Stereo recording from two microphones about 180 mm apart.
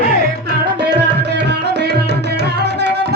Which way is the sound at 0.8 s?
70° right (ahead or behind).